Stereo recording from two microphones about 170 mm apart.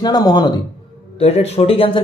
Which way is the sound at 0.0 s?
25° left (ahead or behind).